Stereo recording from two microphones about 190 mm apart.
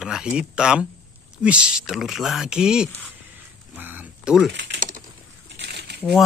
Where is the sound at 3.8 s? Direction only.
10° right (ahead or behind).